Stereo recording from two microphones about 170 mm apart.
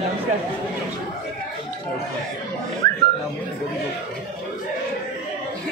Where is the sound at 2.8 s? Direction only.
20° left (ahead or behind).